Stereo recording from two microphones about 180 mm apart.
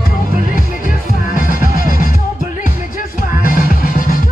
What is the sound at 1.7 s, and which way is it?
Music, 50° left (ahead or behind).